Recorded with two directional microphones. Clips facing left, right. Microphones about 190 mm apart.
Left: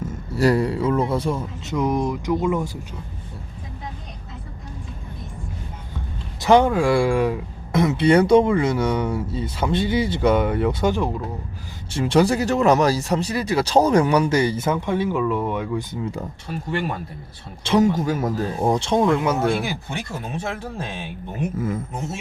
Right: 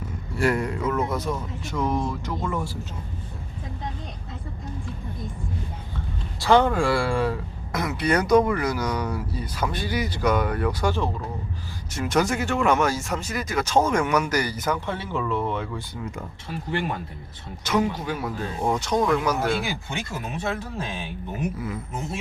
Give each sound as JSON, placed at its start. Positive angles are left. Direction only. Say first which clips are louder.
{"t": 0.3, "sound": "speech", "louder": "left 5 dB", "side_deg": 35}
{"t": 1.7, "sound": "speech", "louder": "left 4 dB", "side_deg": 15}
{"t": 6.4, "sound": "speech", "louder": "left 3 dB", "side_deg": 15}
{"t": 7.7, "sound": "speech", "louder": "left 7 dB", "side_deg": 25}
{"t": 17.6, "sound": "speech", "louder": "left 5 dB", "side_deg": 30}
{"t": 17.9, "sound": "speech", "louder": "left 7 dB", "side_deg": 45}